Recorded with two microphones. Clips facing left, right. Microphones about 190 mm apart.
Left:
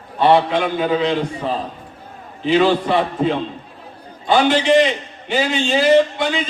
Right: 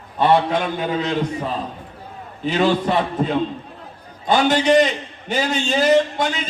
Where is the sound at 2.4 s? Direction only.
45° right (ahead or behind).